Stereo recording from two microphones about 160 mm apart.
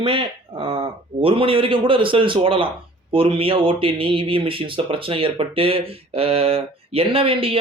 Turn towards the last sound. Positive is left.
turn(degrees=-35)  # may be behind; listen again after turning